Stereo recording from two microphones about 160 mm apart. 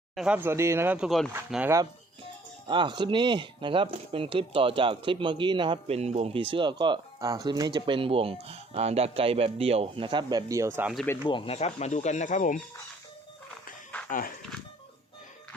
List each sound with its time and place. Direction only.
0.2 s speech: 10° right (ahead or behind)
2.6 s speech: 30° right (ahead or behind)
11.2 s speech: 30° left (ahead or behind); by 12.6 s 50° left (ahead or behind)
14.1 s speech: 60° left (ahead or behind)